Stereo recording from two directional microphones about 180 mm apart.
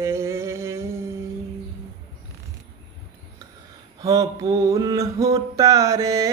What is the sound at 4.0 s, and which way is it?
Mantra, 20° right (ahead or behind).